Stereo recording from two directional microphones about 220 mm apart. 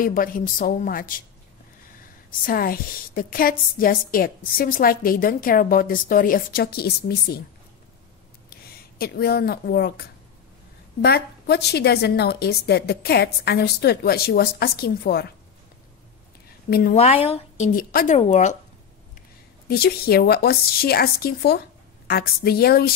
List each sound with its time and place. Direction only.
0.0 s a woman's voice: 40° left (ahead or behind)
2.4 s a woman's voice: 40° left (ahead or behind)
8.9 s a woman's voice: 45° left (ahead or behind)
16.9 s speech: 30° left (ahead or behind)
17.7 s a woman's voice: 40° left (ahead or behind)
18.1 s a woman's voice: 30° left (ahead or behind)
19.7 s a woman's voice: 45° left (ahead or behind)